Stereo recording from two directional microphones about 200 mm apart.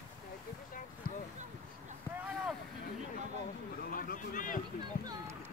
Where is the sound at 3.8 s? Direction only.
45° left (ahead or behind).